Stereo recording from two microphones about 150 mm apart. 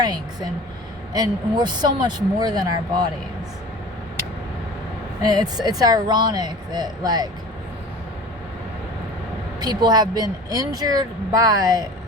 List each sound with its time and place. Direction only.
0.0 s a sound: 25° right (ahead or behind)
1.1 s speech: 25° right (ahead or behind)
5.2 s speech: 25° right (ahead or behind)
9.6 s speech: 25° right (ahead or behind)